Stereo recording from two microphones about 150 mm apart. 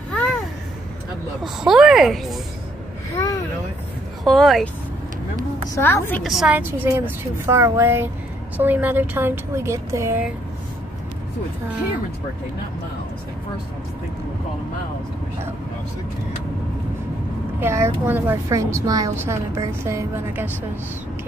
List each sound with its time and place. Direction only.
0.1 s a sound: 5° left (ahead or behind)
1.4 s speech: 5° right (ahead or behind)
4.2 s speech: centre (ahead or behind)
5.8 s a woman's voice: 15° left (ahead or behind)
6.2 s a woman's voice: 5° right (ahead or behind); by 10.2 s 20° right (ahead or behind)
17.6 s a woman's voice: 15° right (ahead or behind)